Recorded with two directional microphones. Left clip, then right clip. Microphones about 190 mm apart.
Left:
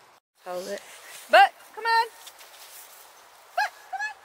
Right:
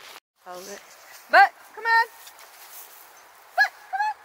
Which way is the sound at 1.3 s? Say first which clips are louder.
Right 1 dB; 65° left (ahead or behind).